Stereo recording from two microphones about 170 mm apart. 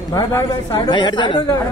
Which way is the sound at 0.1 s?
20° left (ahead or behind).